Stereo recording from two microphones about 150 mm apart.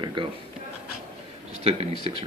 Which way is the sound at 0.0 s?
30° right (ahead or behind).